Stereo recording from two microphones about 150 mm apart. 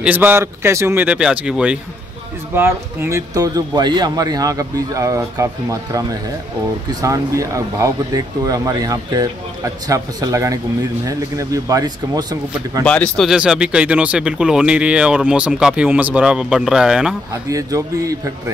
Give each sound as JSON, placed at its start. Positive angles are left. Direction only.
{"t": 0.0, "sound": "a man's voice", "side_deg": -10}
{"t": 12.8, "sound": "speech", "side_deg": 10}
{"t": 17.3, "sound": "a man's voice", "side_deg": -20}